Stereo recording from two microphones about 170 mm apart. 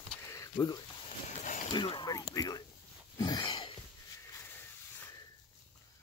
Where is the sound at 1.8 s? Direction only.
25° left (ahead or behind).